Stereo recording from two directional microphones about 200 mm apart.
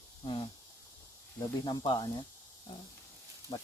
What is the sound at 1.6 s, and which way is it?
Speech, 20° left (ahead or behind).